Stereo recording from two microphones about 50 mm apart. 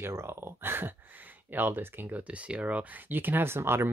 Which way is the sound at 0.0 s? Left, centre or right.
Right.